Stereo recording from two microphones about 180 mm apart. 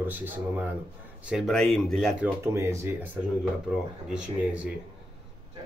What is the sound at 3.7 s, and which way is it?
Speech, 5° right (ahead or behind).